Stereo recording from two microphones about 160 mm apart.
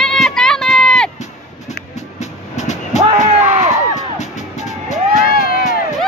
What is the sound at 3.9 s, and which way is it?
Music, 45° left (ahead or behind).